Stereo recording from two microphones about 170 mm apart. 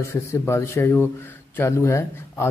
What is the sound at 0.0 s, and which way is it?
Speech, 15° left (ahead or behind).